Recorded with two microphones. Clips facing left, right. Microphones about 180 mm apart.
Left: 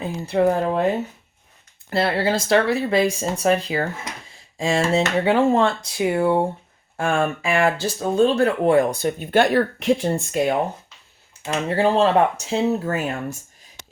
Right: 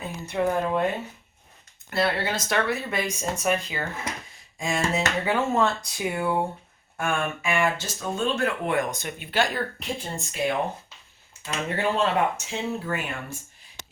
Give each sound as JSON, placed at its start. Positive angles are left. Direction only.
{"t": 0.0, "sound": "speech", "side_deg": 35}
{"t": 1.9, "sound": "speech", "side_deg": 30}
{"t": 11.4, "sound": "speech", "side_deg": 35}